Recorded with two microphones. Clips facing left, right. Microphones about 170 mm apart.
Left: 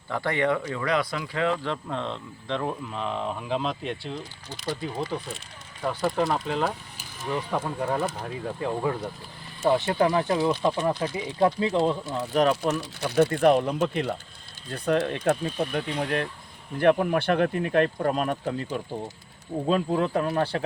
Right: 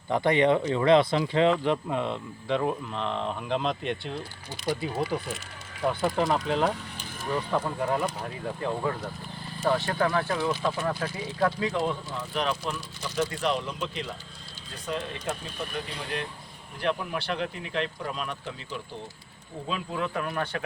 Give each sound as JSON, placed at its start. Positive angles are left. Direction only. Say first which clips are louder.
{"t": 0.1, "sound": "speech", "louder": "right 3 dB", "side_deg": -20}
{"t": 2.9, "sound": "speech", "louder": "left 1 dB", "side_deg": 5}
{"t": 12.0, "sound": "speech", "louder": "left 7 dB", "side_deg": 45}
{"t": 13.0, "sound": "speech", "louder": "left 8 dB", "side_deg": 60}